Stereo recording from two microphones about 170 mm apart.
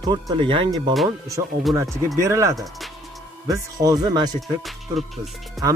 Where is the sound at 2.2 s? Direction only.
20° right (ahead or behind).